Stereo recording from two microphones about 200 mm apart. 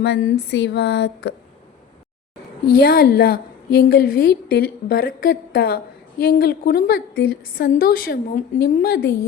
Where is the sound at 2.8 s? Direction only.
50° left (ahead or behind).